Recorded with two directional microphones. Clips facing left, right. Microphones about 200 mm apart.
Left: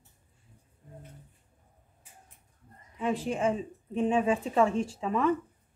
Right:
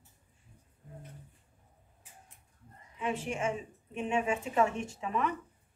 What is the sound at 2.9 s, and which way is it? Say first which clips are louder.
Speech: left 4 dB; 35° left (ahead or behind).